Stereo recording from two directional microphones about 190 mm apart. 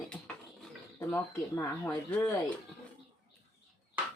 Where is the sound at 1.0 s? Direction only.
10° left (ahead or behind).